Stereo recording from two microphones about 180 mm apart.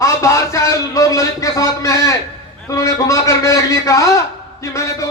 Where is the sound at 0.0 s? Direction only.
15° left (ahead or behind).